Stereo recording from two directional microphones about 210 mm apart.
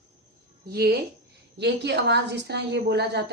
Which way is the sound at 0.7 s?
50° right (ahead or behind).